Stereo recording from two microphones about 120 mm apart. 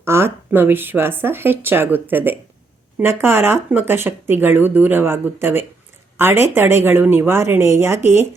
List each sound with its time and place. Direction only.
0.0 s a woman's voice: 20° right (ahead or behind)